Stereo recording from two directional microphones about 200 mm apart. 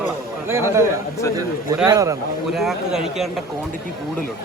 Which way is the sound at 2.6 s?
Centre (ahead or behind).